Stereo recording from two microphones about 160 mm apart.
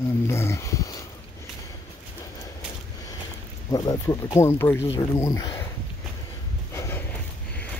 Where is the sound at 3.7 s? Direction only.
25° left (ahead or behind).